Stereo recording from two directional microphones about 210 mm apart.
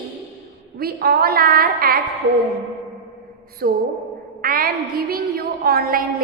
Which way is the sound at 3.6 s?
45° right (ahead or behind).